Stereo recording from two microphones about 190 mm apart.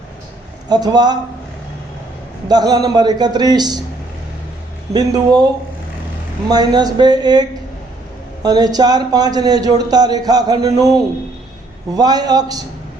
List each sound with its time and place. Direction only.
0.7 s a man's voice: 20° right (ahead or behind)
2.5 s a man's voice: 20° right (ahead or behind)
4.9 s a man's voice: 20° right (ahead or behind)
6.5 s a man's voice: 20° right (ahead or behind)